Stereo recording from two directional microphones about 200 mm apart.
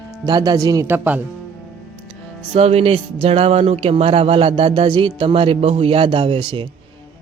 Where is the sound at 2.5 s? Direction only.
30° right (ahead or behind).